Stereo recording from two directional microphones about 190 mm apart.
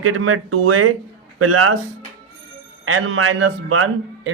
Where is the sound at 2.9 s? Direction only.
90° right.